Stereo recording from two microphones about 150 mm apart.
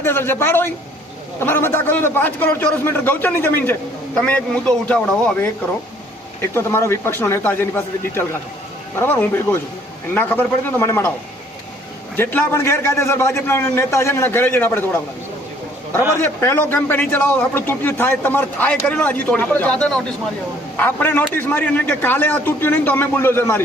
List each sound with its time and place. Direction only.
0.0 s a man's voice: 15° left (ahead or behind)
6.5 s a man's voice: 15° left (ahead or behind)
12.1 s a man's voice: 15° left (ahead or behind)
16.2 s a man's voice: 15° left (ahead or behind)